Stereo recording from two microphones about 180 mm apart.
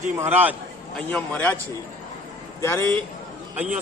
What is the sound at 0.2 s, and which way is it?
Speech, 10° right (ahead or behind).